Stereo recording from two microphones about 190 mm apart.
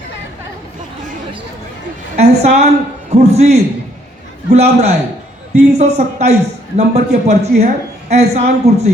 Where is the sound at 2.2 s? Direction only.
35° right (ahead or behind).